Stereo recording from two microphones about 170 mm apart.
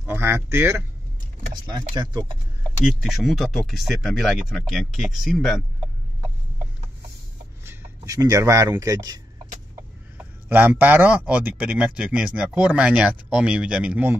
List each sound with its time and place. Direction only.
0.0 s speech: 15° right (ahead or behind)
2.8 s speech: centre (ahead or behind)
7.6 s speech: 15° right (ahead or behind)